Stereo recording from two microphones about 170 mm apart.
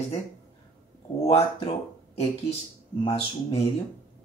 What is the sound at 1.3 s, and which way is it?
Speech, 35° left (ahead or behind).